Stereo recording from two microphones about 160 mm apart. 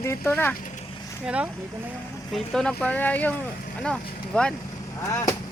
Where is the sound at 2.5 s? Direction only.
5° left (ahead or behind).